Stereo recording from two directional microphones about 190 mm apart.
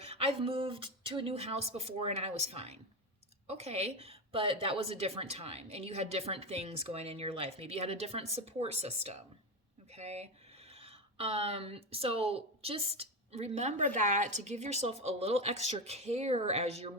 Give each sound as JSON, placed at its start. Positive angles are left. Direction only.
{"t": 0.0, "sound": "speech", "side_deg": -30}